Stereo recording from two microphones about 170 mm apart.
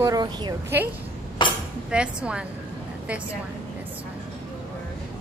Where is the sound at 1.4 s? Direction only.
30° left (ahead or behind).